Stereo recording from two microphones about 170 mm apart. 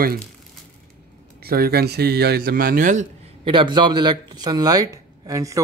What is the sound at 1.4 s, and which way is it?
A man's voice, 65° right (ahead or behind).